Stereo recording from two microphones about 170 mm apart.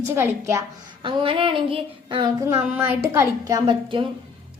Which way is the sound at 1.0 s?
30° right (ahead or behind).